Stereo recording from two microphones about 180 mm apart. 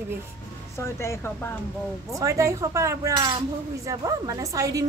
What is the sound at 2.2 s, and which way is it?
A woman's voice, 15° right (ahead or behind).